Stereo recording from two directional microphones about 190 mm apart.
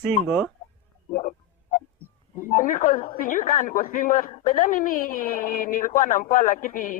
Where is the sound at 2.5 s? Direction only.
50° left (ahead or behind).